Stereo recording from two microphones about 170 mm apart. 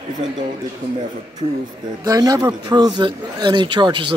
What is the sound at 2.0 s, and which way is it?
A man's voice, 20° right (ahead or behind).